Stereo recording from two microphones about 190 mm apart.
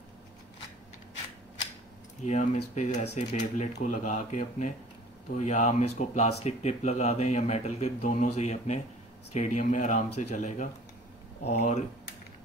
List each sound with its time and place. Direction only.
2.2 s speech: 35° left (ahead or behind)